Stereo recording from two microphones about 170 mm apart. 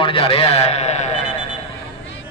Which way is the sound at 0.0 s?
30° left (ahead or behind).